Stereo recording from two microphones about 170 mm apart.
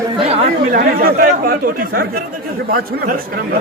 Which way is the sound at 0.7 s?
60° right (ahead or behind).